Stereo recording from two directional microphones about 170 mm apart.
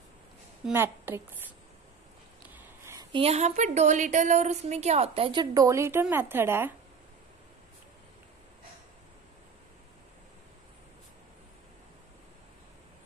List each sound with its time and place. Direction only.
0.7 s a woman's voice: 10° right (ahead or behind)
2.5 s a sound: 15° right (ahead or behind)
3.1 s a woman's voice: 35° right (ahead or behind); by 6.7 s 15° right (ahead or behind)